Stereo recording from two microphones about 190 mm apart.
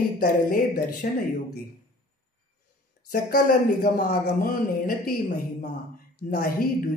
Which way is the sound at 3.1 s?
50° left (ahead or behind).